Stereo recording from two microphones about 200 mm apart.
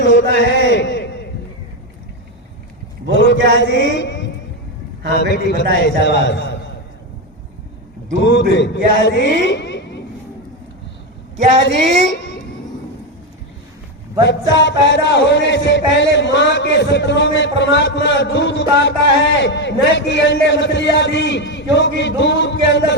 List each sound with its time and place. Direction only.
0.0 s a sound: 60° left (ahead or behind)
3.2 s speech: 60° left (ahead or behind)
5.3 s speech: 55° left (ahead or behind)
8.2 s speech: 60° left (ahead or behind)
12.1 s a sound: 60° left (ahead or behind)
14.2 s speech: 65° left (ahead or behind)